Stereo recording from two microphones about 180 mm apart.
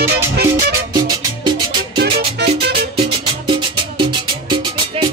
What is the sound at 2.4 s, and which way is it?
Music, 70° right (ahead or behind).